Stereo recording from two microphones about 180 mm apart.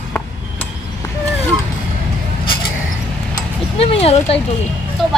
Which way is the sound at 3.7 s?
35° left (ahead or behind).